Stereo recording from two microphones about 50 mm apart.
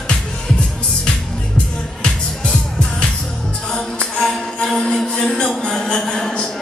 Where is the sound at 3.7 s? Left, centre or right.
Centre.